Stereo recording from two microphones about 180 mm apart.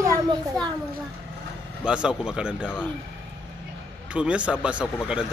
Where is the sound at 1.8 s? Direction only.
5° right (ahead or behind).